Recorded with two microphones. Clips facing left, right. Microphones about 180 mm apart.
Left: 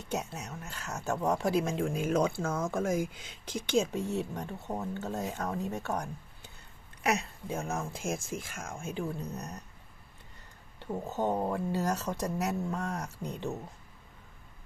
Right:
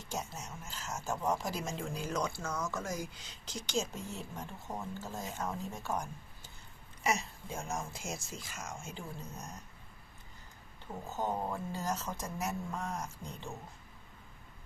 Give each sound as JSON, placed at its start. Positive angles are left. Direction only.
{"t": 0.0, "sound": "speech", "side_deg": 65}
{"t": 10.8, "sound": "speech", "side_deg": 70}